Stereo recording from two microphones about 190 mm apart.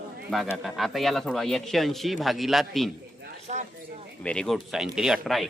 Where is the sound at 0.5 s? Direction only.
Centre (ahead or behind).